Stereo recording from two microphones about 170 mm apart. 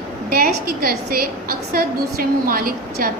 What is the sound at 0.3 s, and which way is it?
A woman's voice, 65° right (ahead or behind).